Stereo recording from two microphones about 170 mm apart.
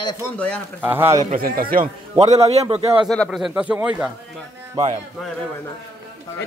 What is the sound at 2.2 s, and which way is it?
Speech, 35° right (ahead or behind).